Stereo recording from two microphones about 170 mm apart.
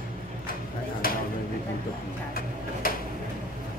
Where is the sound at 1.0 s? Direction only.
60° left (ahead or behind).